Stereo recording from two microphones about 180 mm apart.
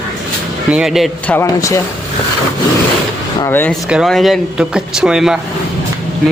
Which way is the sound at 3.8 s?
Centre (ahead or behind).